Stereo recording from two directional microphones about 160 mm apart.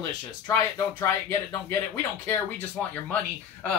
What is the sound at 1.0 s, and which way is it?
Speech, 15° left (ahead or behind).